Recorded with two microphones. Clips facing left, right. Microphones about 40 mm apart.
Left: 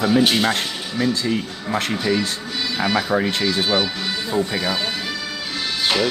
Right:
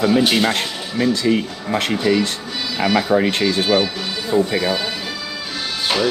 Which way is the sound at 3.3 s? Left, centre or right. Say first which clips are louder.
Right 3 dB; right.